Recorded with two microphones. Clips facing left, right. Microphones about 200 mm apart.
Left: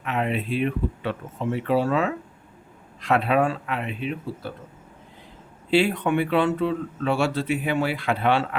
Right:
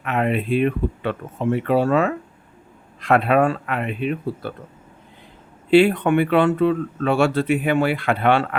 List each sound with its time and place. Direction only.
0.0 s speech: 55° right (ahead or behind)
5.7 s speech: 60° right (ahead or behind)